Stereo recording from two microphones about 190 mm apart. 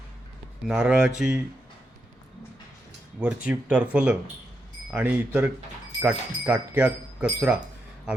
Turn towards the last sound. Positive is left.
turn(degrees=-5)  # may be behind; listen again after turning